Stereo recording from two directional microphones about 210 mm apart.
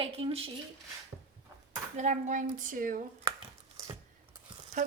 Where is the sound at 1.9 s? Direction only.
35° right (ahead or behind).